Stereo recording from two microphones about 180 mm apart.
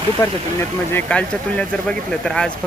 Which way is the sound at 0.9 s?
5° left (ahead or behind).